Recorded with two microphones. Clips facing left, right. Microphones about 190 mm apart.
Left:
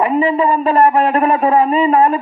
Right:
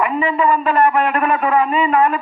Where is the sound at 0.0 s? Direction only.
35° left (ahead or behind).